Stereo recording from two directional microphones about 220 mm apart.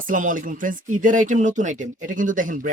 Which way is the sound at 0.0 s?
35° right (ahead or behind).